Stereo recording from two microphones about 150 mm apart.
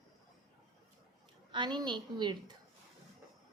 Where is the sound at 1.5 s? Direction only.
30° right (ahead or behind).